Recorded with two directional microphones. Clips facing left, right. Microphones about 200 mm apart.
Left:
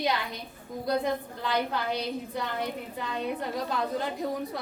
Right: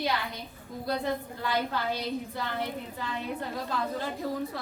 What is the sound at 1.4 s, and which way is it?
A woman's voice, 20° left (ahead or behind).